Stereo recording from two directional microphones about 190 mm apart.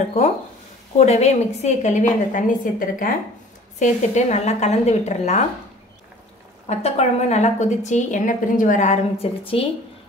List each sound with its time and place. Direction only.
0.9 s a woman's voice: 35° left (ahead or behind)
6.7 s a woman's voice: 35° left (ahead or behind)